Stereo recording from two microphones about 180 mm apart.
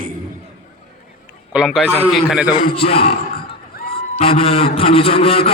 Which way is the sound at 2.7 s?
30° left (ahead or behind).